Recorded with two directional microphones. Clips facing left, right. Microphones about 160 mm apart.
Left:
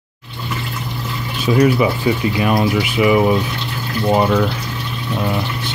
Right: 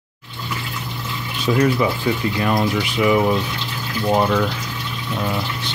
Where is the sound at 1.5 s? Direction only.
10° left (ahead or behind).